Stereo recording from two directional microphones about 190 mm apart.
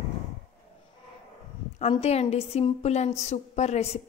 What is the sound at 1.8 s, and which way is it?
A woman's voice, 35° left (ahead or behind).